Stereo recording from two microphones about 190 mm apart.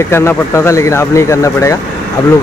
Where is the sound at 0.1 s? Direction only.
15° left (ahead or behind).